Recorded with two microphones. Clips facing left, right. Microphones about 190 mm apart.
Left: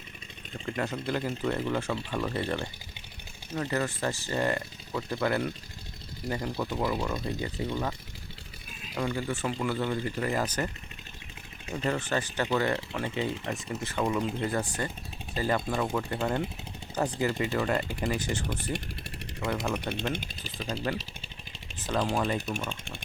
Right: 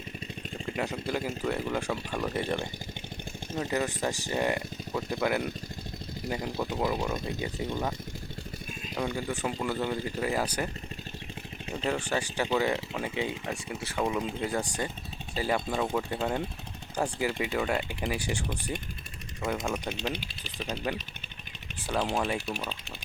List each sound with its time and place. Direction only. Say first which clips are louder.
0.8 s speech: left 1 dB; 10° right (ahead or behind)
9.0 s speech: left 1 dB; 10° right (ahead or behind)
11.9 s speech: even; 10° right (ahead or behind)
19.9 s speech: left 1 dB; 55° left (ahead or behind)
20.9 s speech: left 1 dB; 10° right (ahead or behind)